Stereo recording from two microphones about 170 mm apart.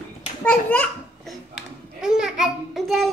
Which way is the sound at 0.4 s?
10° left (ahead or behind).